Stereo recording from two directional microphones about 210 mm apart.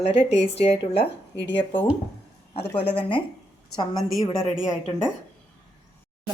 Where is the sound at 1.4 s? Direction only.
55° left (ahead or behind).